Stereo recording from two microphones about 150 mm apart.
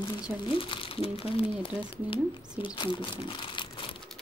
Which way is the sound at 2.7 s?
35° left (ahead or behind).